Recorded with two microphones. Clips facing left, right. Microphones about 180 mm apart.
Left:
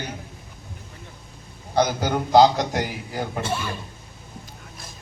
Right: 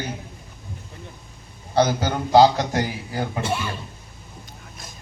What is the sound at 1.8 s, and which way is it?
A man's voice, 15° left (ahead or behind).